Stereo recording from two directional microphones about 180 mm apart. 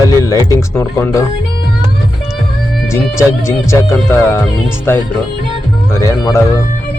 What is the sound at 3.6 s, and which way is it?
Speech, 15° left (ahead or behind).